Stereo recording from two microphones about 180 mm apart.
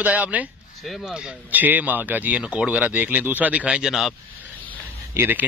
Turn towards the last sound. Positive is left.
turn(degrees=-10)  # may be behind; listen again after turning